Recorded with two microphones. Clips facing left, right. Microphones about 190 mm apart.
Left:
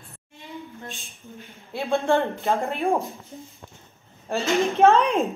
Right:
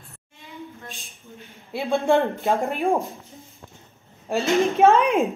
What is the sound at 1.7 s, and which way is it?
Speech, 15° right (ahead or behind).